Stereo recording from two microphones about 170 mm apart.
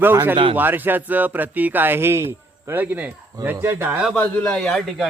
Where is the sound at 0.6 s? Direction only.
10° right (ahead or behind).